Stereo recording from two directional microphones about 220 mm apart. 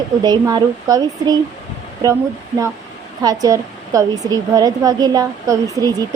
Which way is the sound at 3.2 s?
15° right (ahead or behind).